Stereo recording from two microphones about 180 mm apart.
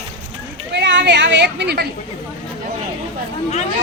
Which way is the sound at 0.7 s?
80° right.